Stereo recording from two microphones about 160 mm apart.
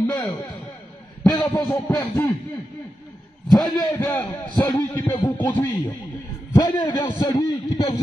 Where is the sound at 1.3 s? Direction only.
20° left (ahead or behind).